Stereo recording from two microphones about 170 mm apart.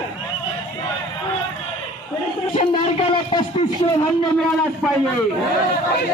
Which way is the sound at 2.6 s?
35° left (ahead or behind).